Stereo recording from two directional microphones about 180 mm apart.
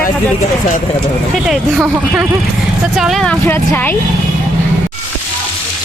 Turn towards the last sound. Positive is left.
turn(degrees=10)  # may be behind; listen again after turning